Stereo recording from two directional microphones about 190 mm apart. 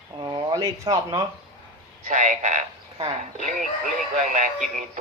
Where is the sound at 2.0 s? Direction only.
40° right (ahead or behind).